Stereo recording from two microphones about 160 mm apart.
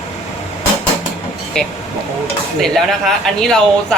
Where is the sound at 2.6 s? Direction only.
Centre (ahead or behind).